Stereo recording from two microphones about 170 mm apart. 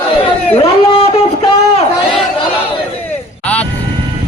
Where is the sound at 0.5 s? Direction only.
35° left (ahead or behind).